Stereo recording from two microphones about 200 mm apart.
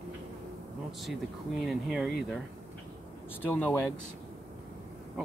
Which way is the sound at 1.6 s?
Centre (ahead or behind).